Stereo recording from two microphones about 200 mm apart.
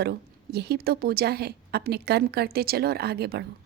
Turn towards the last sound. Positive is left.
turn(degrees=-55)  # may be behind; listen again after turning